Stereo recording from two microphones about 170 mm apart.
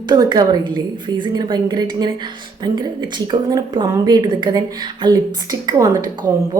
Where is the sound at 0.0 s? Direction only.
25° right (ahead or behind).